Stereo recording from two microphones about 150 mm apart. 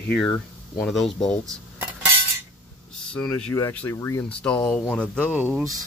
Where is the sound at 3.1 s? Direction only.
5° left (ahead or behind).